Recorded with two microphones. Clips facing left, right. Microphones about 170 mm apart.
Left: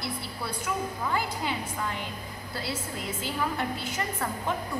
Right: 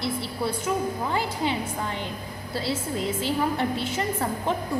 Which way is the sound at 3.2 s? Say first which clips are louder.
Right 4 dB; 25° right (ahead or behind).